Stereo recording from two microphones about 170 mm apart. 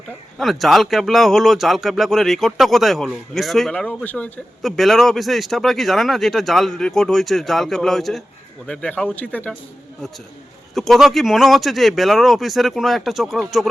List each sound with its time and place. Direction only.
0.3 s a man's voice: centre (ahead or behind)
10.8 s a man's voice: centre (ahead or behind)